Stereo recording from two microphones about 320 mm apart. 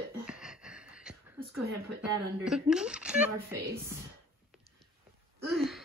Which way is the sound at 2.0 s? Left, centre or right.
Centre.